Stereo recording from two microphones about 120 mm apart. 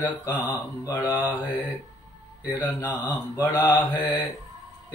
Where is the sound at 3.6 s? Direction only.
15° left (ahead or behind).